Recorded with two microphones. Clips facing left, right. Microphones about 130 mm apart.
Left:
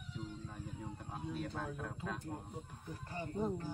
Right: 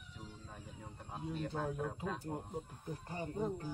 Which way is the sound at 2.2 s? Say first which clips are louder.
Right 3 dB; 25° right (ahead or behind).